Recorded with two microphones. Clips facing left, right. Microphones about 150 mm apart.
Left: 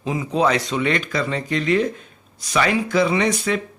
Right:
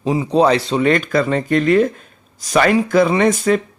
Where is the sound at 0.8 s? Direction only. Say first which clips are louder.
Right 7 dB; 50° right (ahead or behind).